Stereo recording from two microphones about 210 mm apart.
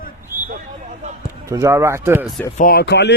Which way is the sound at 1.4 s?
15° right (ahead or behind).